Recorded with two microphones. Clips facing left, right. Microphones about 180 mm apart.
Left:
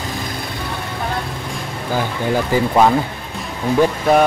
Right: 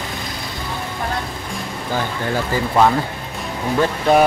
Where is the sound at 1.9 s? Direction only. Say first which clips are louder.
Left 3 dB; 15° left (ahead or behind).